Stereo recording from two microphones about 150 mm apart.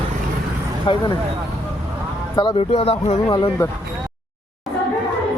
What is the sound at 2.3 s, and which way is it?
Speech, 35° left (ahead or behind).